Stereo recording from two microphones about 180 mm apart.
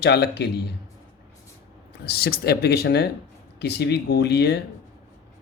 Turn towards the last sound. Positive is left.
turn(degrees=65)  # may be behind; listen again after turning